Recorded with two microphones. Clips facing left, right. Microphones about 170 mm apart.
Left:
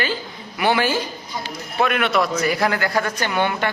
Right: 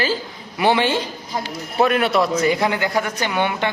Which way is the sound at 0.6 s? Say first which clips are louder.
Right 2 dB; 25° right (ahead or behind).